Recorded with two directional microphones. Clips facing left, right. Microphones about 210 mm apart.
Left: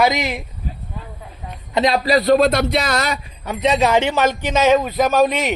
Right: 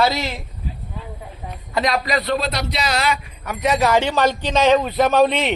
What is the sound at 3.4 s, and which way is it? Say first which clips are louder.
Speech: left 2 dB; 25° left (ahead or behind).